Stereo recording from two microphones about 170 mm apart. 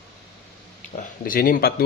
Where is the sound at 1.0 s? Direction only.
55° left (ahead or behind).